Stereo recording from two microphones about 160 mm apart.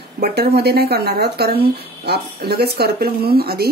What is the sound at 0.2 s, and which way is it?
Speech, 85° right.